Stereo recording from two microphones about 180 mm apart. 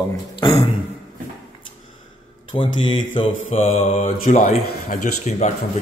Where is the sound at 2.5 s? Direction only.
30° left (ahead or behind).